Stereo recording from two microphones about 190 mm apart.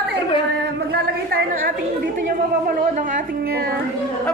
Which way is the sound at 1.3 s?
50° right (ahead or behind).